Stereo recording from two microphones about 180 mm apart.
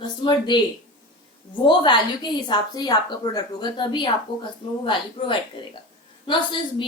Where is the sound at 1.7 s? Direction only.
25° left (ahead or behind).